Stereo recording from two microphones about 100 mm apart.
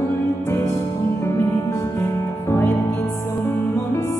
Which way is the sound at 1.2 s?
25° left (ahead or behind).